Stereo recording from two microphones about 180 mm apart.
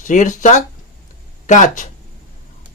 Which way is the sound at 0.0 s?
45° left (ahead or behind).